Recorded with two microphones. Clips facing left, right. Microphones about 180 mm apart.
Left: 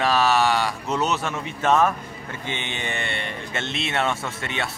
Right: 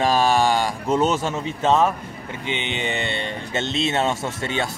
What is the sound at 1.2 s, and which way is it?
Speech, 25° right (ahead or behind).